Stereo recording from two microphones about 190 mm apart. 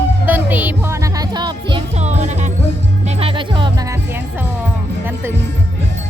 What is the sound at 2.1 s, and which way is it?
Music, 35° right (ahead or behind).